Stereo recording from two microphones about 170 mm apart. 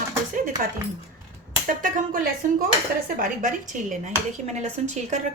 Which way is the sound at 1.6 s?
50° right (ahead or behind).